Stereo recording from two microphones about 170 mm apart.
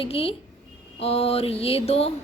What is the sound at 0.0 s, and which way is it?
A woman's voice, 35° left (ahead or behind).